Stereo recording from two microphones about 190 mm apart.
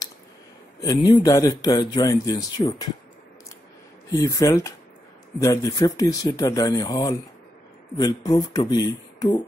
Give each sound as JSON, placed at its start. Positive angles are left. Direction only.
{"t": 0.7, "sound": "speech", "side_deg": 20}
{"t": 4.1, "sound": "speech", "side_deg": 15}